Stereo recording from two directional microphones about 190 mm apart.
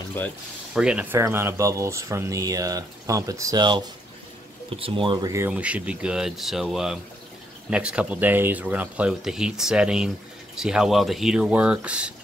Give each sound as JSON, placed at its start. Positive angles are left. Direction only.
{"t": 0.7, "sound": "speech", "side_deg": -5}
{"t": 5.5, "sound": "speech", "side_deg": -5}